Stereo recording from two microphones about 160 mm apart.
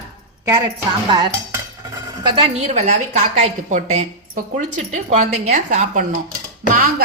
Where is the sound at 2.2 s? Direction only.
30° right (ahead or behind).